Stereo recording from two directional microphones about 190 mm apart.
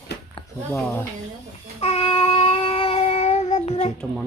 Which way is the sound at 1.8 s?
30° left (ahead or behind).